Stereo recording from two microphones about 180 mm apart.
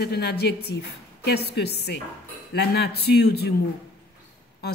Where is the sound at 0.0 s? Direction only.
65° left (ahead or behind).